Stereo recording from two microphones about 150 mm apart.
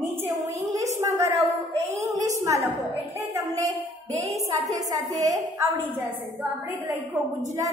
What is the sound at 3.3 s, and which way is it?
Speech, 20° right (ahead or behind).